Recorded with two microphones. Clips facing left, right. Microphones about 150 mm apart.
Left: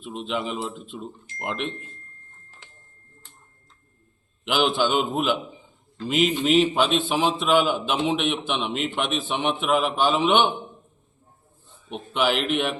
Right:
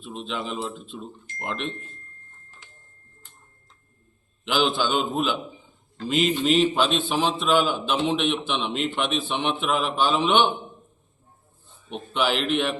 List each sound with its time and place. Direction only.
0.0 s a man's voice: 10° left (ahead or behind)
4.4 s a man's voice: 10° left (ahead or behind)
11.9 s a man's voice: 10° left (ahead or behind)